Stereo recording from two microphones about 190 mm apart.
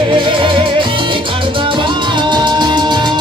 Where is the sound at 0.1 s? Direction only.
25° right (ahead or behind).